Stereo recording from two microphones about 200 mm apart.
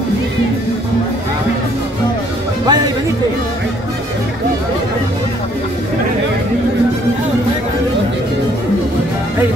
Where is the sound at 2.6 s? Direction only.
20° right (ahead or behind).